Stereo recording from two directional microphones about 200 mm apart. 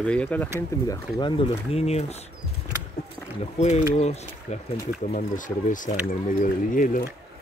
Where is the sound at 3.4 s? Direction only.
35° left (ahead or behind).